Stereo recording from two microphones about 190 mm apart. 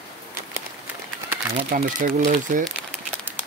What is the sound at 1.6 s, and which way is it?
Speech, 40° right (ahead or behind).